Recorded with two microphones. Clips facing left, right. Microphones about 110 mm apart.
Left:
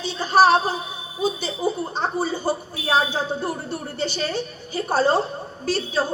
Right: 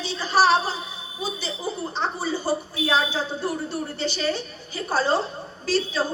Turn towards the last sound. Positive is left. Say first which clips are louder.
# left 1 dB
turn(degrees=55)  # may be behind; listen again after turning